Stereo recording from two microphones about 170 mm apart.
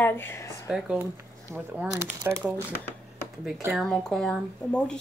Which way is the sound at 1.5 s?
10° right (ahead or behind).